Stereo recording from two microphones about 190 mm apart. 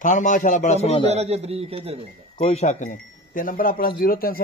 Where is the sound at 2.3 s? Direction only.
35° left (ahead or behind).